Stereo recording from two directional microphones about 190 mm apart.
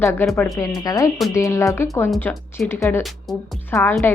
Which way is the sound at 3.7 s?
10° left (ahead or behind).